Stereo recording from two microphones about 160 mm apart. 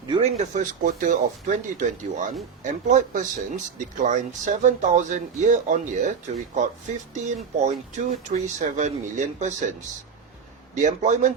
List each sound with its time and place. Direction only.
0.1 s speech: 40° right (ahead or behind)
7.6 s speech: 45° right (ahead or behind)
10.8 s speech: 50° right (ahead or behind)